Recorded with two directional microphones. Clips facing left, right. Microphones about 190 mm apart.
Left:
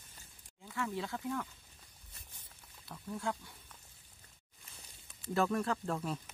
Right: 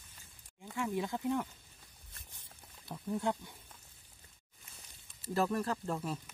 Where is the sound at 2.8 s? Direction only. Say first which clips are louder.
Right 4 dB; 20° right (ahead or behind).